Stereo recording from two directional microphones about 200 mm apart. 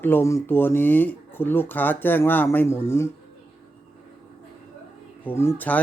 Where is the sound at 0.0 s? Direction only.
10° left (ahead or behind).